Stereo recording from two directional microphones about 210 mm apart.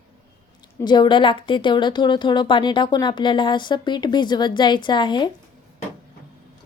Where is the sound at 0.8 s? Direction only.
20° left (ahead or behind).